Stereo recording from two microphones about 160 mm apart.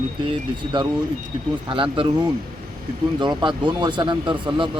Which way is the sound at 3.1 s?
30° right (ahead or behind).